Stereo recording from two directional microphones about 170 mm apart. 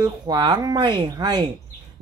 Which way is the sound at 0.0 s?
25° right (ahead or behind).